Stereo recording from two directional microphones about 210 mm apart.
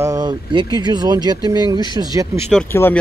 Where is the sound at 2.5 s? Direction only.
5° left (ahead or behind).